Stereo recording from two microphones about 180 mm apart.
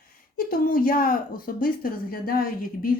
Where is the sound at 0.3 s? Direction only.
50° left (ahead or behind).